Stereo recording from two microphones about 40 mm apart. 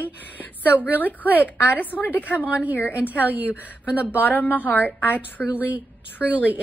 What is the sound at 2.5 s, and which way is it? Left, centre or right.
Speech, right.